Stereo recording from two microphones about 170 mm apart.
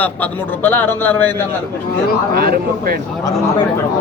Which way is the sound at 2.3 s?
60° right (ahead or behind).